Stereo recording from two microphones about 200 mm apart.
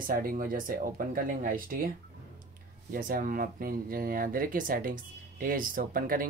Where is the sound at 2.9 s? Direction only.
45° right (ahead or behind).